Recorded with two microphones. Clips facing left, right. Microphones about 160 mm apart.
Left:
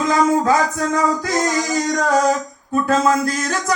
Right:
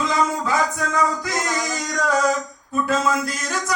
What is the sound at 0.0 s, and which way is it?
Music, 45° left (ahead or behind).